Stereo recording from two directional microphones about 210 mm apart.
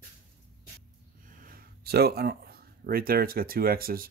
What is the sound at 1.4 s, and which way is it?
Speech, 45° right (ahead or behind).